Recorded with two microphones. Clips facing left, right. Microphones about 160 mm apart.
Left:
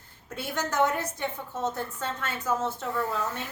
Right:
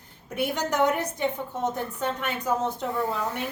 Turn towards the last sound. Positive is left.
turn(degrees=-15)  # may be behind; listen again after turning